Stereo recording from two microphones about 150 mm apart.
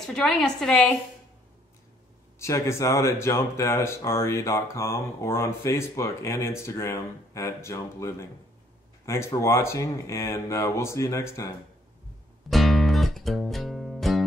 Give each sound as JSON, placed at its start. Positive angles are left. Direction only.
{"t": 0.0, "sound": "a woman's voice", "side_deg": 0}
{"t": 2.3, "sound": "speech", "side_deg": 20}
{"t": 12.4, "sound": "music", "side_deg": 0}